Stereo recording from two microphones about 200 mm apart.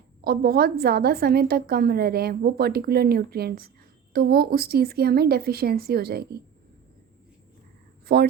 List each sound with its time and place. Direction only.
0.3 s a woman's voice: 50° right (ahead or behind)
8.0 s speech: 55° right (ahead or behind)